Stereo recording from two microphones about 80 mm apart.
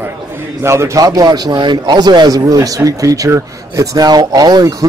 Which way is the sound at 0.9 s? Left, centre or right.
Right.